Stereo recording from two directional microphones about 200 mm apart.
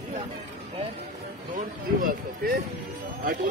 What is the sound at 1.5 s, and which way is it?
Speech, 40° right (ahead or behind).